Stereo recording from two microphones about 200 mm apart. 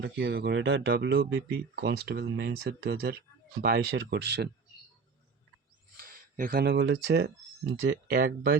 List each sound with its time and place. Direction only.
0.0 s speech: 55° right (ahead or behind)
6.0 s speech: 45° right (ahead or behind)